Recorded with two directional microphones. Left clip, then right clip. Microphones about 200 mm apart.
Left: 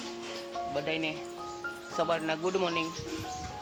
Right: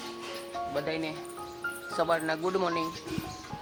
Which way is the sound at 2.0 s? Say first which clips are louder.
Right 2 dB; centre (ahead or behind).